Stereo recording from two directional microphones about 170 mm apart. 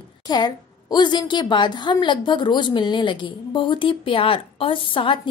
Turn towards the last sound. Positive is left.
turn(degrees=30)  # may be behind; listen again after turning